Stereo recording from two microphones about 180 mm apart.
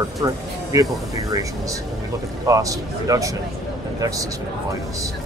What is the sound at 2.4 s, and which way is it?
Speech, 20° right (ahead or behind).